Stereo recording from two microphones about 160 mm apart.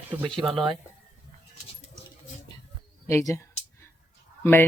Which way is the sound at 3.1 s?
20° left (ahead or behind).